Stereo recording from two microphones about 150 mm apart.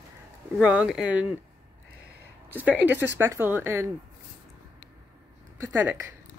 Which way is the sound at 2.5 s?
10° right (ahead or behind).